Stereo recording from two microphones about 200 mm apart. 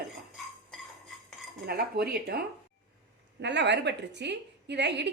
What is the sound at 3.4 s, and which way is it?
A woman's voice, 60° right (ahead or behind).